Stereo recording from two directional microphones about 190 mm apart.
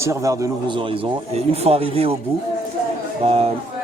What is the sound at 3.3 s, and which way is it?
Speech, 35° right (ahead or behind).